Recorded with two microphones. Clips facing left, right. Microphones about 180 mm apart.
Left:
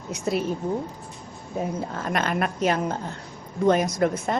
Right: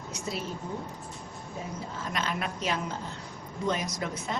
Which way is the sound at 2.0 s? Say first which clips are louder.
Left 7 dB; 55° left (ahead or behind).